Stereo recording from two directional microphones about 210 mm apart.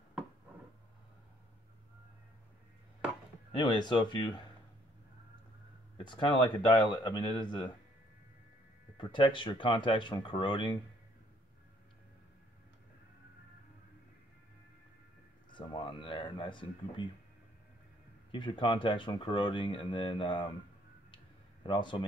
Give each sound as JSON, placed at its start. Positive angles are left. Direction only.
{"t": 3.5, "sound": "speech", "side_deg": 20}
{"t": 5.9, "sound": "speech", "side_deg": 20}
{"t": 8.9, "sound": "speech", "side_deg": 20}
{"t": 15.5, "sound": "speech", "side_deg": 25}
{"t": 18.3, "sound": "speech", "side_deg": 25}
{"t": 21.6, "sound": "speech", "side_deg": 20}